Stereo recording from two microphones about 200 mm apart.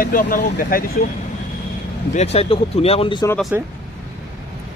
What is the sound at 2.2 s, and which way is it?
Speech, 30° left (ahead or behind).